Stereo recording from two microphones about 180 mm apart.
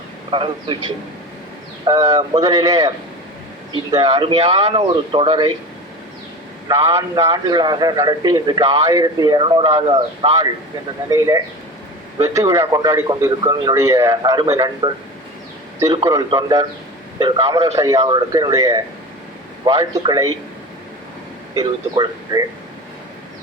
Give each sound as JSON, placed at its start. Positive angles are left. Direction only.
{"t": 0.3, "sound": "a man's voice", "side_deg": -30}
{"t": 1.8, "sound": "a man's voice", "side_deg": -20}
{"t": 6.7, "sound": "a man's voice", "side_deg": -15}
{"t": 21.5, "sound": "a man's voice", "side_deg": -20}